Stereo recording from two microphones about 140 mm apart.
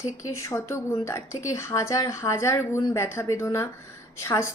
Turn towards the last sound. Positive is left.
turn(degrees=20)  # may be behind; listen again after turning